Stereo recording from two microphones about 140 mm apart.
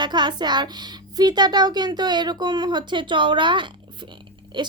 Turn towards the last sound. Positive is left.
turn(degrees=-35)  # may be behind; listen again after turning